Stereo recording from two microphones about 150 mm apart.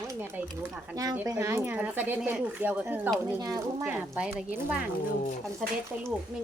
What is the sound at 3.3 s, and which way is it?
Speech, 25° right (ahead or behind).